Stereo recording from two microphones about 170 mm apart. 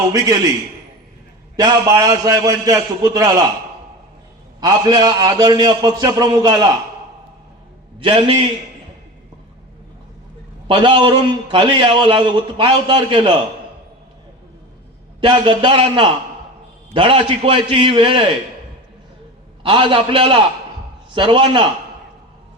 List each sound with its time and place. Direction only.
0.1 s a man's voice: 20° right (ahead or behind)
1.5 s a man's voice: 20° right (ahead or behind)
4.6 s a man's voice: 25° right (ahead or behind)
7.9 s a man's voice: 30° right (ahead or behind)
10.7 s a man's voice: 30° right (ahead or behind)
15.2 s a man's voice: 30° right (ahead or behind)
19.6 s a man's voice: 30° right (ahead or behind)